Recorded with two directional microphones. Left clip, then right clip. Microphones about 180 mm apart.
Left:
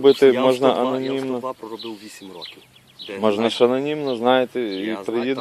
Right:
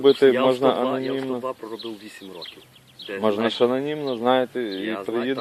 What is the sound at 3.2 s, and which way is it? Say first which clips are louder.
A man's voice: left 3 dB; 35° left (ahead or behind).